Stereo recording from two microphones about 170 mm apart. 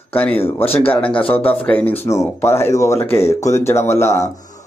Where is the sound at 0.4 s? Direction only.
15° left (ahead or behind).